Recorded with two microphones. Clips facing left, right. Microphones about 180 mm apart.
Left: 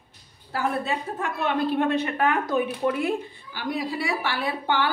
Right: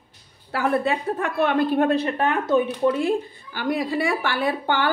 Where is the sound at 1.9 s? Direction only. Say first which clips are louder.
Right 2 dB; 35° right (ahead or behind).